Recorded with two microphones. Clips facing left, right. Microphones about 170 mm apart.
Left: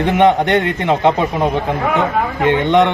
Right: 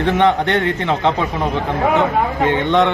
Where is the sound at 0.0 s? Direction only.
15° left (ahead or behind).